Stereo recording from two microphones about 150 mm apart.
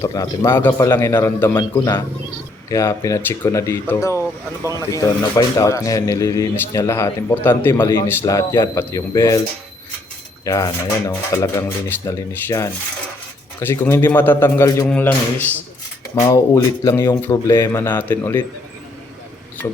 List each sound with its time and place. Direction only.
0.0 s a man's voice: 20° left (ahead or behind)
1.5 s speech: 25° left (ahead or behind)
4.2 s speech: 20° right (ahead or behind)
4.8 s a man's voice: 20° left (ahead or behind)
10.4 s a man's voice: 20° left (ahead or behind)